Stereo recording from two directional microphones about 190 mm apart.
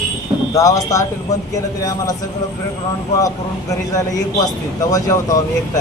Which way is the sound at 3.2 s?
20° left (ahead or behind).